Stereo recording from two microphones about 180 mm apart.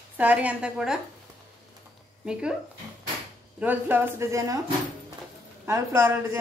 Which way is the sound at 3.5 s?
10° right (ahead or behind).